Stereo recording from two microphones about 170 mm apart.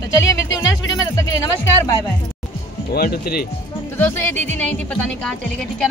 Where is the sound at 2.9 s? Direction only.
65° left (ahead or behind).